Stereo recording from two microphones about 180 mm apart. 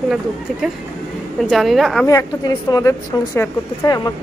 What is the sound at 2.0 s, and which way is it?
Speech, 20° left (ahead or behind).